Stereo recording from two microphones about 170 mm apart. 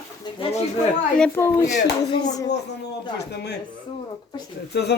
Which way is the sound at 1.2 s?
15° left (ahead or behind).